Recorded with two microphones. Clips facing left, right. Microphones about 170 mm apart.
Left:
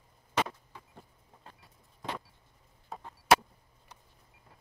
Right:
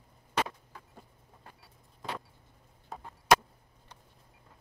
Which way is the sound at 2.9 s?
Centre (ahead or behind).